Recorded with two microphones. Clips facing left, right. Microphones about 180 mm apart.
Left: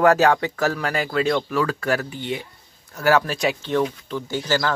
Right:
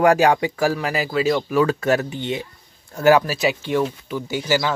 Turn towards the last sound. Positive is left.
turn(degrees=-10)  # may be behind; listen again after turning